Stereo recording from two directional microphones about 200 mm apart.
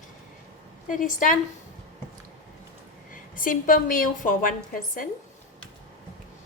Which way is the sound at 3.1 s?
40° left (ahead or behind).